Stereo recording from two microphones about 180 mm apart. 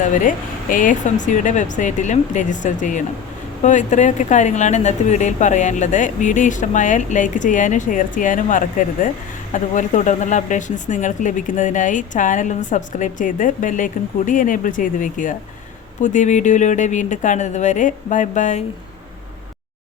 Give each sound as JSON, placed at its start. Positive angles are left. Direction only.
{"t": 0.0, "sound": "speech", "side_deg": 45}